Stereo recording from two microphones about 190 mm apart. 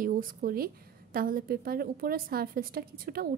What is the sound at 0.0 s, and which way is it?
A woman's voice, 45° right (ahead or behind).